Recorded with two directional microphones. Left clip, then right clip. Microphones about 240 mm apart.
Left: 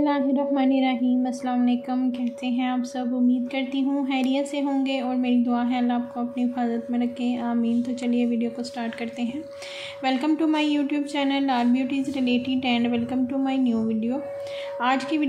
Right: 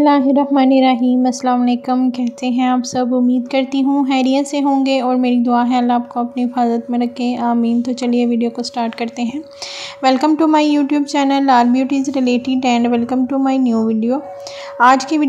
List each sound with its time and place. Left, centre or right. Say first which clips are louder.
0.0 s a woman's voice: right 10 dB; right